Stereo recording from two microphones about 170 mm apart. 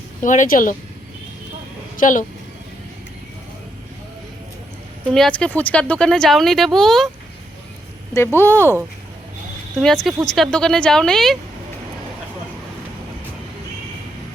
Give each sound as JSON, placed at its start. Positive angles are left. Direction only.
{"t": 0.2, "sound": "speech", "side_deg": 50}
{"t": 2.0, "sound": "speech", "side_deg": 50}
{"t": 5.0, "sound": "speech", "side_deg": 5}
{"t": 8.1, "sound": "speech", "side_deg": 15}
{"t": 9.8, "sound": "speech", "side_deg": 5}